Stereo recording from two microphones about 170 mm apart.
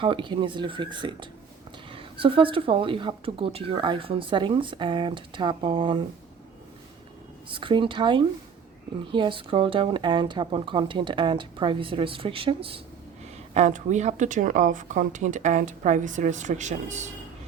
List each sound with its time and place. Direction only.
0.0 s a woman's voice: 30° right (ahead or behind)
7.5 s speech: 30° right (ahead or behind)